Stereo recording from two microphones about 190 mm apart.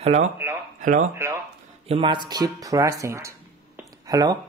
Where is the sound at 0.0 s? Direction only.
35° right (ahead or behind).